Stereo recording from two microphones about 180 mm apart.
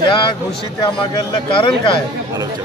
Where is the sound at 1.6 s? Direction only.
25° left (ahead or behind).